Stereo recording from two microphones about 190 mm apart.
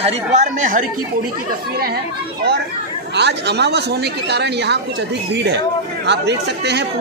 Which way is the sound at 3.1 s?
65° right (ahead or behind).